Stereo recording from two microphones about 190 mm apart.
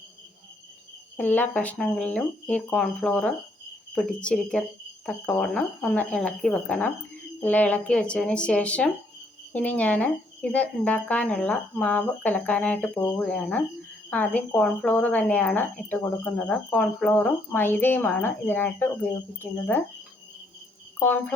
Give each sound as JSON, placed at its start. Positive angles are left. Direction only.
{"t": 1.1, "sound": "speech", "side_deg": 10}
{"t": 21.0, "sound": "speech", "side_deg": 10}